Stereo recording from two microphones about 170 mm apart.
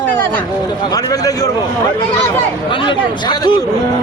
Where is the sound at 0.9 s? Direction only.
20° left (ahead or behind).